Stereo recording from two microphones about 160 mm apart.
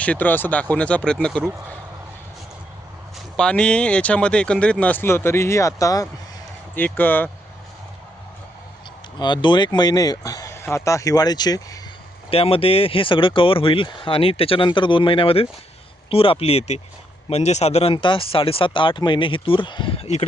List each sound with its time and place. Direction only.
0.0 s speech: 10° left (ahead or behind)
3.3 s speech: 5° left (ahead or behind)
9.1 s speech: 30° left (ahead or behind)
12.3 s speech: 35° left (ahead or behind)